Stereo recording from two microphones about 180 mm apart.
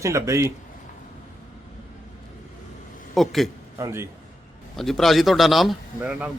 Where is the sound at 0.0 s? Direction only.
15° right (ahead or behind).